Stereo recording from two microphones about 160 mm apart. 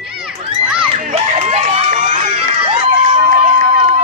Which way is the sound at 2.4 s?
35° right (ahead or behind).